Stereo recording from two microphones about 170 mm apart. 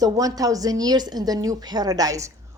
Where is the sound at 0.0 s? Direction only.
20° right (ahead or behind).